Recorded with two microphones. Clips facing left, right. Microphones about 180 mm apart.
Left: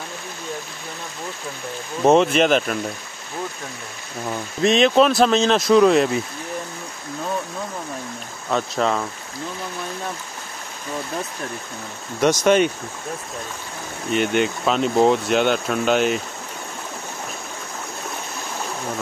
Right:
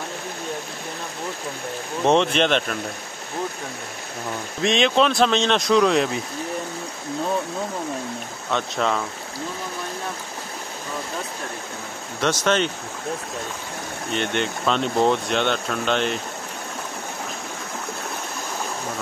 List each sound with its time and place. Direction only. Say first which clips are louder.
2.0 s speech: left 4 dB; 5° left (ahead or behind)
4.6 s speech: left 4 dB; centre (ahead or behind)
8.5 s speech: left 2 dB; 5° left (ahead or behind)
12.2 s speech: left 5 dB; 10° left (ahead or behind)
14.1 s speech: left 5 dB; 5° left (ahead or behind)